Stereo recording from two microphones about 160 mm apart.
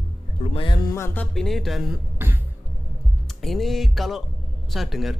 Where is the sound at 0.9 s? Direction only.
15° left (ahead or behind).